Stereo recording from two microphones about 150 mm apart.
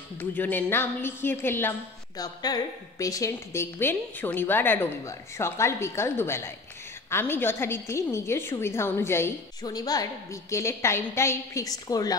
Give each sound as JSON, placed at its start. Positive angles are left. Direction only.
{"t": 0.2, "sound": "a woman's voice", "side_deg": 10}